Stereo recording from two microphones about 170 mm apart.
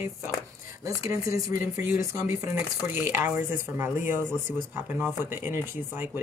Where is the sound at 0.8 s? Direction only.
20° right (ahead or behind).